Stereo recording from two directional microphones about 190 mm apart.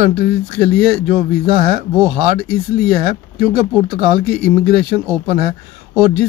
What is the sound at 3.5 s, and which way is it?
Speech, 30° right (ahead or behind).